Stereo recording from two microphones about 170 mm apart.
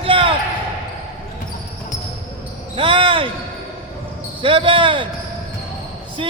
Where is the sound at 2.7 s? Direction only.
30° right (ahead or behind).